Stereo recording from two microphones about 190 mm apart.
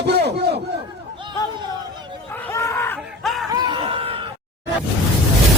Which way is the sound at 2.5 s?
15° left (ahead or behind).